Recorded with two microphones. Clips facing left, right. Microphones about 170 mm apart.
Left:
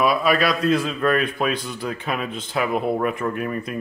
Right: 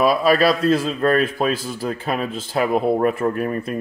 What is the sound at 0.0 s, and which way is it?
Speech, 35° right (ahead or behind).